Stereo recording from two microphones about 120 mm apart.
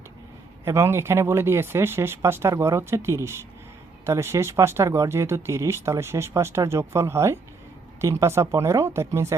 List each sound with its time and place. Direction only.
0.6 s speech: 20° right (ahead or behind)